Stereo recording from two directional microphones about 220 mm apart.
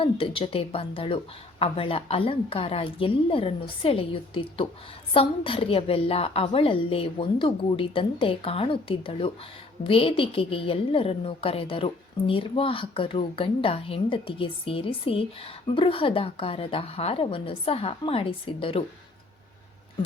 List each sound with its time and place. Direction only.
0.0 s a woman's voice: 25° left (ahead or behind)